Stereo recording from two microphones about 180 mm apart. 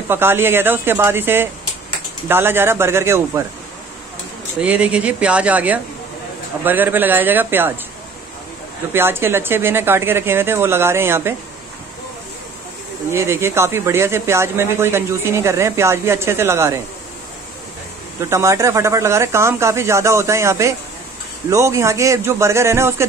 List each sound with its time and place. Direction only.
0.1 s speech: 10° right (ahead or behind)
4.6 s speech: 10° right (ahead or behind)
8.9 s speech: 10° right (ahead or behind)
13.1 s speech: 15° right (ahead or behind)
18.3 s speech: 15° right (ahead or behind)